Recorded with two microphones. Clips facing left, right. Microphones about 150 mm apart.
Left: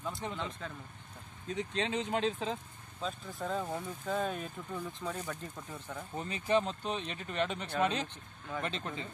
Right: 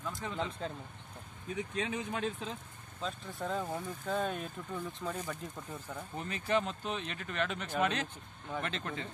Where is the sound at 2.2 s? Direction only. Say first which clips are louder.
Left 4 dB; 90° left.